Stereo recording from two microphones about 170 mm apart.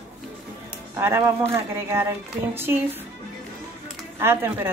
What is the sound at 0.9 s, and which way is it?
A woman's voice, 15° right (ahead or behind).